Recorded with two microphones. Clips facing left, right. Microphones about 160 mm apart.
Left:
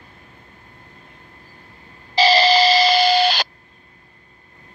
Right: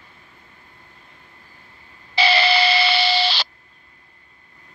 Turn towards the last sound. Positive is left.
turn(degrees=50)  # may be behind; listen again after turning